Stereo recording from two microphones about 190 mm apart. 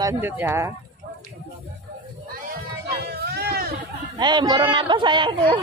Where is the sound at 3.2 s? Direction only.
55° right (ahead or behind).